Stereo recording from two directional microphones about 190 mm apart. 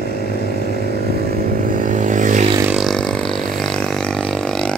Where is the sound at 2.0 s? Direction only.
40° right (ahead or behind).